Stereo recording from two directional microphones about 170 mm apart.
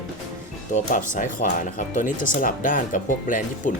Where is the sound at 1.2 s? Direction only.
50° left (ahead or behind).